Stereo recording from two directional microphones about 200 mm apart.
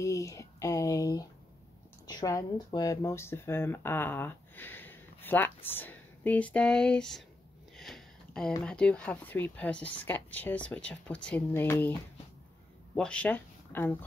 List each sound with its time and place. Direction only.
0.0 s a sound: 15° left (ahead or behind)
2.0 s speech: 20° left (ahead or behind)
7.7 s sniff: centre (ahead or behind)
8.6 s speech: 5° left (ahead or behind)